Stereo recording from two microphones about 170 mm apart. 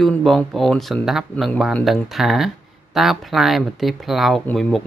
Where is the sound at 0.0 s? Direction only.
Centre (ahead or behind).